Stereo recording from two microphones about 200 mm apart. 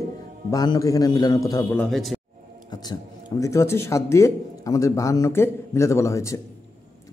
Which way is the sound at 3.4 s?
15° left (ahead or behind).